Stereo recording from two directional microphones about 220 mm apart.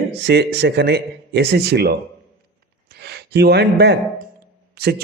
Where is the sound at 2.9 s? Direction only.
45° right (ahead or behind).